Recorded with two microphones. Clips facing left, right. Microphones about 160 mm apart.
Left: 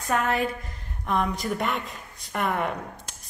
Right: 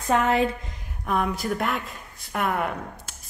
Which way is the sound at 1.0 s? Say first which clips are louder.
Right 1 dB; 5° right (ahead or behind).